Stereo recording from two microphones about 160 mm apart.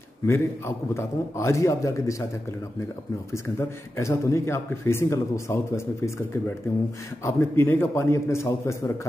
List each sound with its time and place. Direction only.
0.3 s a man's voice: 15° left (ahead or behind)
3.5 s speech: 20° left (ahead or behind)
7.2 s speech: 15° left (ahead or behind)